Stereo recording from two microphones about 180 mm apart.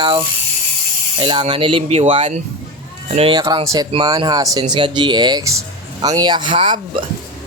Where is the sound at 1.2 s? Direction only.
30° right (ahead or behind).